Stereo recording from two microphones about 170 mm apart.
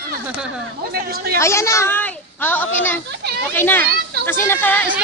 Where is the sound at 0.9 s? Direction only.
65° right (ahead or behind).